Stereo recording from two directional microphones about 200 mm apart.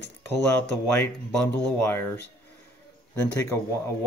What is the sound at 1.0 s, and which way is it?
Speech, 15° left (ahead or behind).